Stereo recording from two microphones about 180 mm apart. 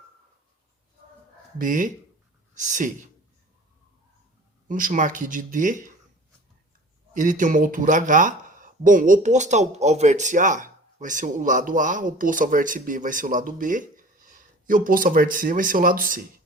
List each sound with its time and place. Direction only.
1.5 s speech: 45° right (ahead or behind)
4.7 s speech: 45° right (ahead or behind)
7.1 s speech: 45° right (ahead or behind)